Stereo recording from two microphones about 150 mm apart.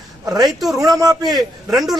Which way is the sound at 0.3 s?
25° right (ahead or behind).